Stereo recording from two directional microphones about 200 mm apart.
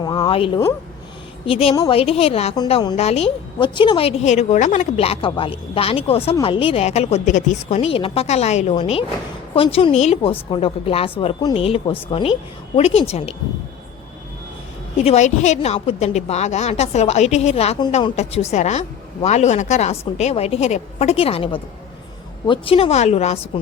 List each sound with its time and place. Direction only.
0.0 s a sound: 25° left (ahead or behind)
1.5 s a woman's voice: 30° left (ahead or behind)
15.0 s a woman's voice: 35° left (ahead or behind)